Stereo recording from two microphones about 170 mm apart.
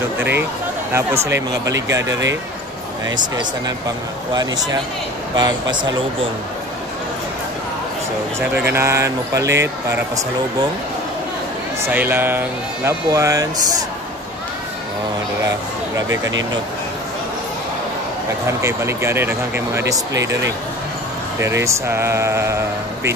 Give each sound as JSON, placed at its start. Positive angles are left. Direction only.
{"t": 0.9, "sound": "speech", "side_deg": -15}
{"t": 4.3, "sound": "speech", "side_deg": -20}
{"t": 8.4, "sound": "speech", "side_deg": -15}
{"t": 11.8, "sound": "speech", "side_deg": -10}
{"t": 18.6, "sound": "speech", "side_deg": -15}